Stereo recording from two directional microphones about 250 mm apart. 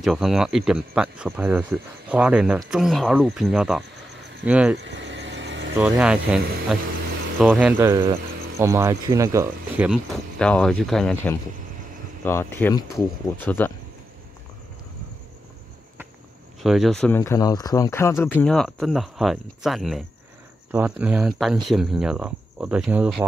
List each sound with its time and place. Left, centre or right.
0.0 s speech: centre
4.7 s vehicle: right
5.8 s speech: centre
10.4 s speech: centre
16.6 s speech: centre